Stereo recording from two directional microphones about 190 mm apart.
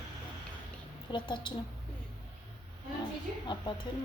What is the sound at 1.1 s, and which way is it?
Speech, 25° left (ahead or behind).